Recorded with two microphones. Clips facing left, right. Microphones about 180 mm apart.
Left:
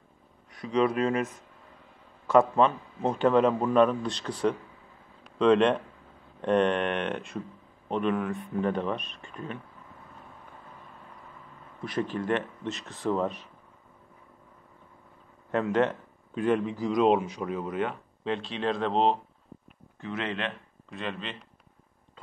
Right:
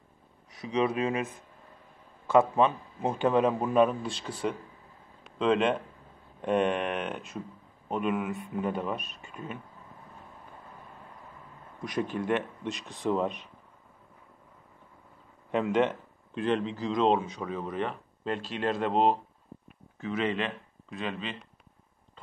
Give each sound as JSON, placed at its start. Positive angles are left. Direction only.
{"t": 0.7, "sound": "a man's voice", "side_deg": -15}
{"t": 2.3, "sound": "a man's voice", "side_deg": -15}
{"t": 11.9, "sound": "a man's voice", "side_deg": -10}
{"t": 16.3, "sound": "speech", "side_deg": 10}